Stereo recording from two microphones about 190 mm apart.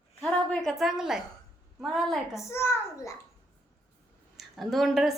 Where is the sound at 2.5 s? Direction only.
15° left (ahead or behind).